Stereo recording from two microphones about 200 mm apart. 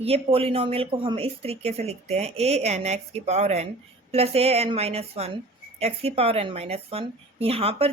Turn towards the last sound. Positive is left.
turn(degrees=-30)  # may be behind; listen again after turning